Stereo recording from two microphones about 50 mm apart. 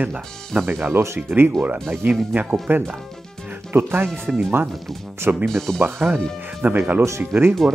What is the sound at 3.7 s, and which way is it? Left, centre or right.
Speech, right.